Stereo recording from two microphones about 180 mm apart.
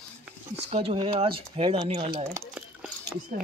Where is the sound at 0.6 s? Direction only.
35° right (ahead or behind).